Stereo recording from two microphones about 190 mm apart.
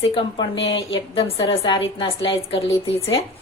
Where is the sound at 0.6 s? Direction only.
25° left (ahead or behind).